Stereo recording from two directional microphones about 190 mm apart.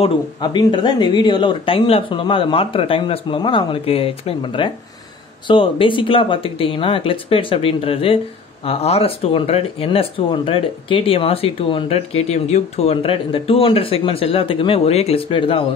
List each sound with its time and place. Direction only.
0.0 s speech: 25° left (ahead or behind)